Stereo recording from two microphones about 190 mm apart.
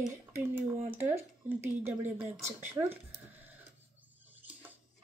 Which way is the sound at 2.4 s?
10° right (ahead or behind).